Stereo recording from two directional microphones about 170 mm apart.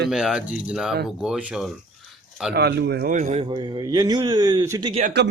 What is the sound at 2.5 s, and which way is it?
Speech, 75° right (ahead or behind).